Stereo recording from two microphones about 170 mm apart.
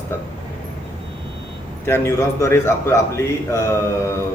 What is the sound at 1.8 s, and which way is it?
A man's voice, 15° left (ahead or behind).